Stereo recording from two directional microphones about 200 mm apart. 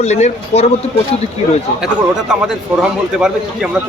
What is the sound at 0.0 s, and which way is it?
Speech, 35° left (ahead or behind).